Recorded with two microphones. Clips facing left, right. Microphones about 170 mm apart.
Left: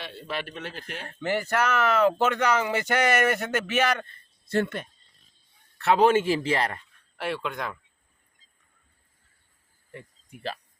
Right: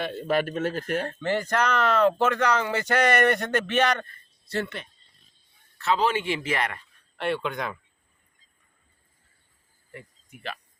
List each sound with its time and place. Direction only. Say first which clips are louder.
0.0 s a man's voice: right 9 dB; 45° right (ahead or behind)
1.0 s speech: right 1 dB; 10° left (ahead or behind)
4.4 s a man's voice: left 4 dB; 50° left (ahead or behind); by 6.7 s 30° left (ahead or behind)
7.2 s speech: right 3 dB; centre (ahead or behind)
10.2 s speech: left 3 dB; 35° left (ahead or behind)